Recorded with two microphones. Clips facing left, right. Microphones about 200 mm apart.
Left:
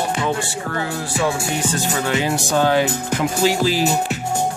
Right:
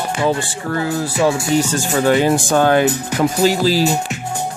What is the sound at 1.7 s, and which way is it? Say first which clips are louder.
Speech: right 6 dB; 45° right (ahead or behind).